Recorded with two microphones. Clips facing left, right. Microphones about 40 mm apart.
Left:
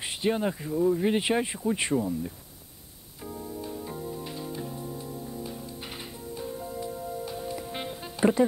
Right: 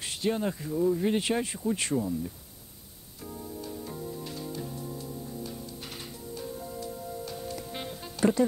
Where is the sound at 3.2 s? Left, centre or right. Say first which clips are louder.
Left 3 dB; centre.